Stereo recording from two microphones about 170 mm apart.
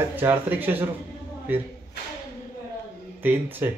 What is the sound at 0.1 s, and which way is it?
Speech, 10° right (ahead or behind).